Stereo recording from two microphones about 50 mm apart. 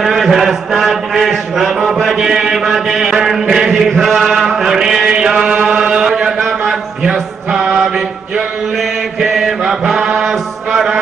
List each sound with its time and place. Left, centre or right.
0.0 s mantra: centre
5.3 s chant: right
5.8 s mantra: centre
9.7 s chant: centre
10.7 s mantra: centre